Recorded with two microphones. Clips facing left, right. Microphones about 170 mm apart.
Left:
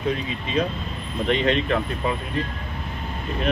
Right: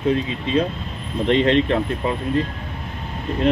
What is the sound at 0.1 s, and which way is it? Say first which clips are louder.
Speech: right 5 dB; 30° right (ahead or behind).